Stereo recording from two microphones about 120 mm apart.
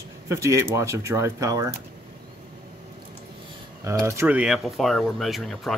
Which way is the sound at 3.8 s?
25° right (ahead or behind).